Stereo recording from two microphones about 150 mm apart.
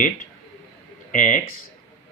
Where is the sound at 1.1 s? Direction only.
60° left (ahead or behind).